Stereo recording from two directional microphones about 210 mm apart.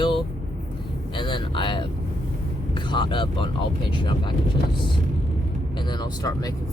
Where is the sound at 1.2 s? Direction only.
25° left (ahead or behind).